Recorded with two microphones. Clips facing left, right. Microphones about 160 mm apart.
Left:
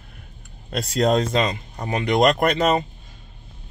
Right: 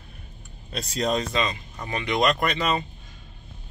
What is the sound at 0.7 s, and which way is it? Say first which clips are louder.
Speech: left 6 dB; 55° left (ahead or behind).